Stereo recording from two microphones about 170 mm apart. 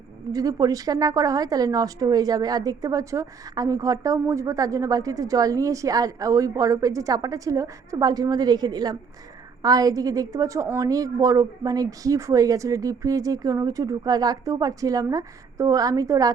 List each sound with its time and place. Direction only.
0.3 s a woman's voice: 20° right (ahead or behind)